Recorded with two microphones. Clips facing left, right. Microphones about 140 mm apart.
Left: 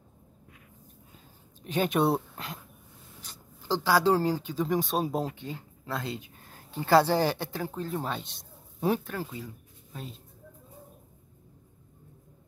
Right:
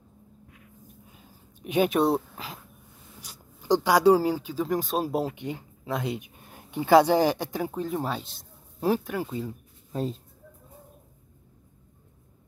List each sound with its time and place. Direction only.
1.6 s speech: 10° right (ahead or behind)
2.0 s speech: centre (ahead or behind)
3.2 s speech: 15° right (ahead or behind)
5.3 s speech: 20° right (ahead or behind); by 9.0 s centre (ahead or behind)
9.0 s speech: 15° right (ahead or behind)
9.3 s speech: 30° right (ahead or behind)